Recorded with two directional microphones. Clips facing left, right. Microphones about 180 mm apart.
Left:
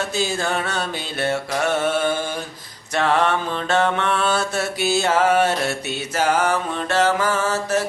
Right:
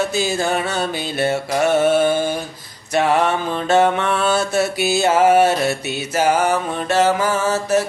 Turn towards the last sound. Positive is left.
turn(degrees=-10)  # may be behind; listen again after turning